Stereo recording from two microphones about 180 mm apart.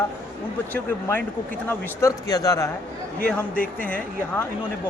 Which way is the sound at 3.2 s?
5° left (ahead or behind).